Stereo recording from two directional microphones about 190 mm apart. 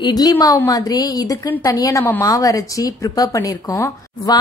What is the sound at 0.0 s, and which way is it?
A woman's voice, 20° left (ahead or behind).